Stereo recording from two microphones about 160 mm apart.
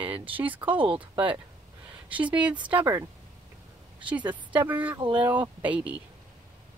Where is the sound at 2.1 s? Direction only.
10° right (ahead or behind).